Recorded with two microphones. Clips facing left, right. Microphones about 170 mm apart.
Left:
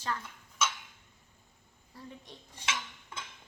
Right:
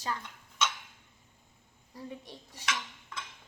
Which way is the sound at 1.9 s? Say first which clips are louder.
Right 5 dB; 10° right (ahead or behind).